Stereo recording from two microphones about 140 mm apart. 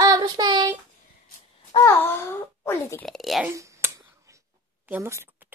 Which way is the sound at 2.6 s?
15° left (ahead or behind).